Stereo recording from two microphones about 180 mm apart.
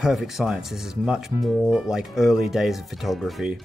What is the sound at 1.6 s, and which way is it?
Speech, 5° right (ahead or behind).